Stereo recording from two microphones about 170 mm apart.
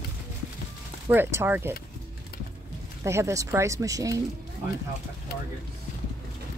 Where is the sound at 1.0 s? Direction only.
15° right (ahead or behind).